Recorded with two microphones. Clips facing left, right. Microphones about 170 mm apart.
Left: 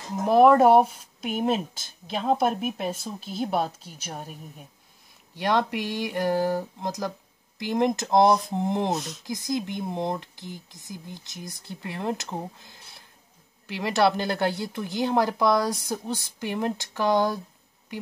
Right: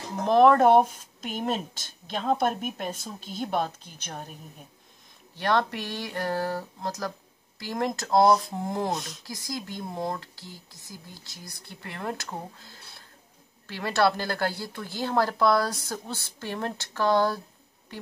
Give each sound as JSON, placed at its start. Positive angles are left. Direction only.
{"t": 0.2, "sound": "speech", "side_deg": 10}
{"t": 8.9, "sound": "speech", "side_deg": 0}
{"t": 9.2, "sound": "speech", "side_deg": 20}